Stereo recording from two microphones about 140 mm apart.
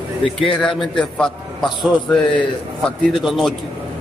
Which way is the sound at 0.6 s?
5° left (ahead or behind).